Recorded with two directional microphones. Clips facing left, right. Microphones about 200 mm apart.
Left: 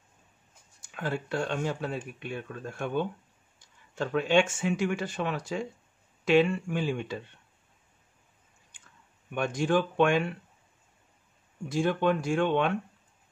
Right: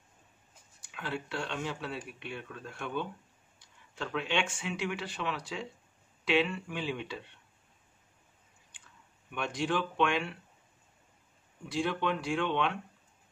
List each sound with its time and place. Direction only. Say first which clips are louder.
0.8 s speech: left 5 dB; 45° left (ahead or behind)
9.3 s speech: left 6 dB; 45° left (ahead or behind)
11.7 s speech: left 6 dB; 45° left (ahead or behind)